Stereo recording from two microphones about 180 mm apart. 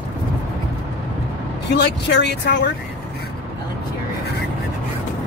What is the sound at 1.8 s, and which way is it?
Speech, 70° left (ahead or behind).